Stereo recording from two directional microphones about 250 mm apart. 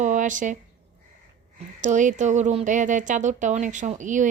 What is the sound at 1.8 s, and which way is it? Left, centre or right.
Speech, right.